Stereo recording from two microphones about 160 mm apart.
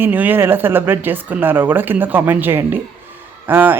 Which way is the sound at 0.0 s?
10° right (ahead or behind).